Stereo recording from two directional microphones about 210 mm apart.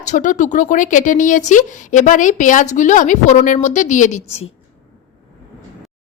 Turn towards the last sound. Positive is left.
turn(degrees=35)  # may be behind; listen again after turning